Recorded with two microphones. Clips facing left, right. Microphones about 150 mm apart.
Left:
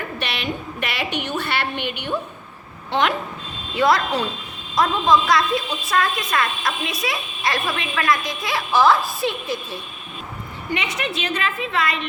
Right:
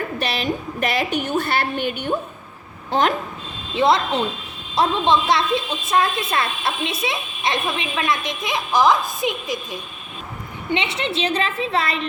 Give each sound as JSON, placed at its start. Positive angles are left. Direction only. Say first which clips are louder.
{"t": 0.2, "sound": "a woman's voice", "louder": "right 3 dB", "side_deg": -35}
{"t": 3.8, "sound": "a woman's voice", "louder": "right 1 dB", "side_deg": -25}
{"t": 10.7, "sound": "a woman's voice", "louder": "right 2 dB", "side_deg": -25}